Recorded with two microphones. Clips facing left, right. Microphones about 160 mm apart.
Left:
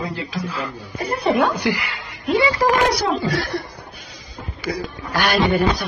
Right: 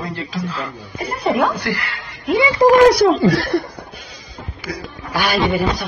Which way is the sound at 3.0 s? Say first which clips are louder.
Right 7 dB; 60° right (ahead or behind).